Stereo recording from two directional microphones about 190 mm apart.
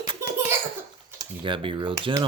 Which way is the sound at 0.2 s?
15° right (ahead or behind).